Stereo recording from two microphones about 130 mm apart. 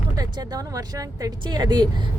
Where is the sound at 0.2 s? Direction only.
30° right (ahead or behind).